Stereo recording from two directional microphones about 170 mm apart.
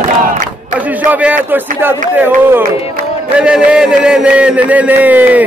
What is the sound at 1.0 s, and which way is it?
A man's voice, 10° right (ahead or behind).